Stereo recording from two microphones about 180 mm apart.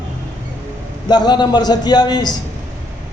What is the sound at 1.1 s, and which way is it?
Speech, 25° left (ahead or behind).